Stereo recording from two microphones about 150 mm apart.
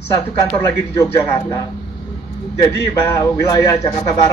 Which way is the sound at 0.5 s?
20° left (ahead or behind).